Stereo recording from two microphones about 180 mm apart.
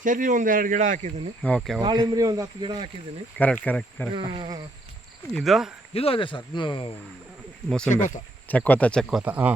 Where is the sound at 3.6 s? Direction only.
10° left (ahead or behind).